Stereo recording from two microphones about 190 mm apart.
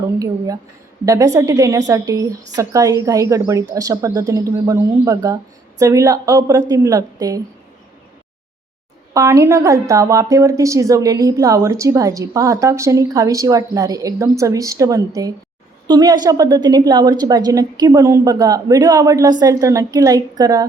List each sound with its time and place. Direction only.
0.2 s a woman's voice: 20° right (ahead or behind)
9.1 s a woman's voice: 15° right (ahead or behind)